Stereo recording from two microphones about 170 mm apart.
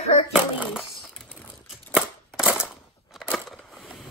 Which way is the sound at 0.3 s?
5° right (ahead or behind).